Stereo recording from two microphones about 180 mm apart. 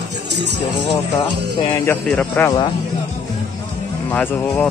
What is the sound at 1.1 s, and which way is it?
Speech, 25° left (ahead or behind).